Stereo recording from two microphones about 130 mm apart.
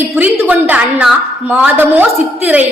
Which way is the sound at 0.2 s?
15° right (ahead or behind).